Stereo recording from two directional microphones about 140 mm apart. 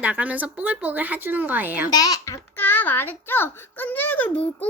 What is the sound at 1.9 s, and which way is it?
Speech, 25° left (ahead or behind).